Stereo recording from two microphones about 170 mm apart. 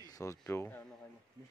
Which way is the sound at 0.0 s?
20° left (ahead or behind).